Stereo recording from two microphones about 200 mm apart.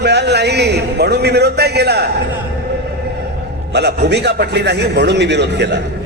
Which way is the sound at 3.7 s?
55° right (ahead or behind).